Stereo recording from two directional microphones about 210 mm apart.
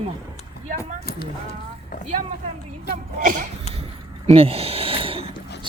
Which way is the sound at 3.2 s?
40° right (ahead or behind).